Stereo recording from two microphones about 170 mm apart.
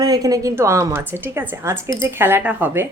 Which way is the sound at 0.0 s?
20° right (ahead or behind).